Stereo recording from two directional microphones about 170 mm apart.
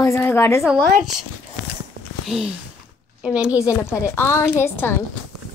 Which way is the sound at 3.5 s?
15° left (ahead or behind).